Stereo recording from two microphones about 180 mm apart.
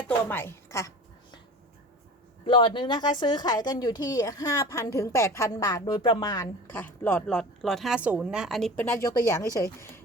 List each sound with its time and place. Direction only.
0.3 s a sound: 10° left (ahead or behind)
2.5 s a woman's voice: 30° left (ahead or behind); by 8.7 s centre (ahead or behind)
8.7 s speech: 10° left (ahead or behind)